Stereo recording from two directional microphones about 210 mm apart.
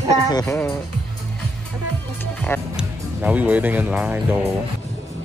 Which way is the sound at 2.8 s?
5° right (ahead or behind).